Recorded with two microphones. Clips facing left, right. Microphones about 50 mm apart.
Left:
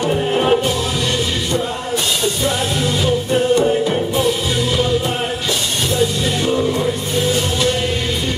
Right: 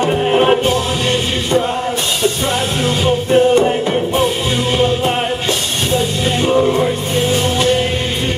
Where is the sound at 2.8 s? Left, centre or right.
Right.